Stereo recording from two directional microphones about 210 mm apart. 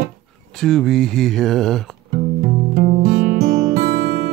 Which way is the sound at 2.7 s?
40° right (ahead or behind).